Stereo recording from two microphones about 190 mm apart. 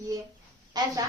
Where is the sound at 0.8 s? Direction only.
20° right (ahead or behind).